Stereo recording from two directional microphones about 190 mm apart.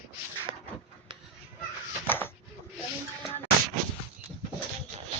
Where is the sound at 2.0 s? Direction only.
10° left (ahead or behind).